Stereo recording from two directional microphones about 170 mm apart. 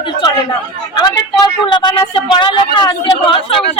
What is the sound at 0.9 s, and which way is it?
Speech, 25° left (ahead or behind).